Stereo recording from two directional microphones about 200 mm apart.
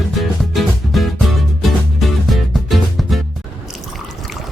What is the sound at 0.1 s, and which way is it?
Music, centre (ahead or behind).